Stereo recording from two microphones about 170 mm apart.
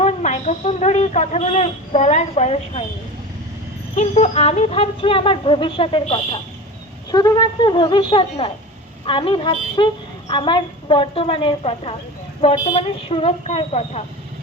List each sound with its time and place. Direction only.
0.0 s speech: 45° left (ahead or behind)
3.9 s a woman's voice: 40° left (ahead or behind)